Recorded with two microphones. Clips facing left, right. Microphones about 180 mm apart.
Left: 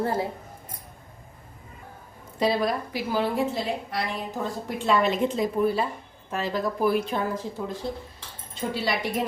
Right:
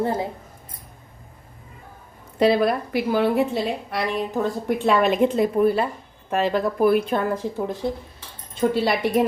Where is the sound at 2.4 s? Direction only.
60° right (ahead or behind).